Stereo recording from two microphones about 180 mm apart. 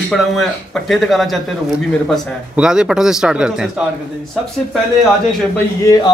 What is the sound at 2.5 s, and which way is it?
Speech, 5° right (ahead or behind).